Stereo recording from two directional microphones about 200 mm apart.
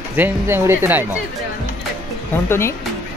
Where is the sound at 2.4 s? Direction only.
10° left (ahead or behind).